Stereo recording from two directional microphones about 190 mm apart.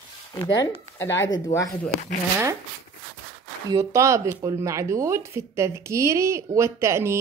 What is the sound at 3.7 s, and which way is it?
Speech, 15° right (ahead or behind).